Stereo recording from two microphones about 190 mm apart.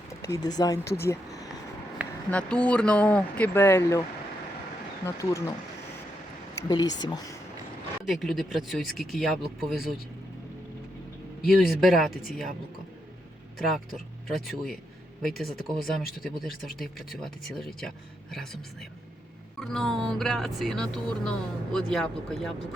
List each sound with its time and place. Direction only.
0.1 s speech: 15° left (ahead or behind)
1.0 s a sound: 15° left (ahead or behind)
2.3 s speech: 5° left (ahead or behind)
5.0 s speech: 15° left (ahead or behind)
6.6 s speech: 20° left (ahead or behind)
8.0 s speech: centre (ahead or behind)
11.4 s speech: centre (ahead or behind)
13.6 s speech: centre (ahead or behind)